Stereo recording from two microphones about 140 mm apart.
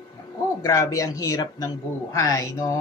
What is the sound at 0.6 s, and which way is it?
Speech, 25° left (ahead or behind).